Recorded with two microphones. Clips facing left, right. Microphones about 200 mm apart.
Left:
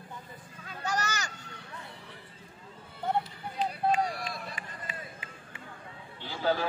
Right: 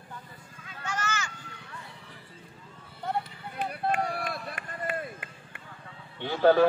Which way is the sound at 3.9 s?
55° right (ahead or behind).